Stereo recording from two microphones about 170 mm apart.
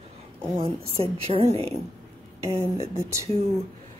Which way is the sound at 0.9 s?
35° right (ahead or behind).